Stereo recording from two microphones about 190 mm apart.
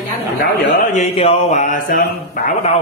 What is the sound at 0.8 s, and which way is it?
Mantra, 35° left (ahead or behind).